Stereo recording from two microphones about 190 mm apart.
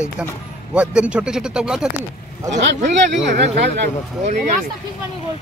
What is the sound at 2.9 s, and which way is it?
Speech, 65° right (ahead or behind).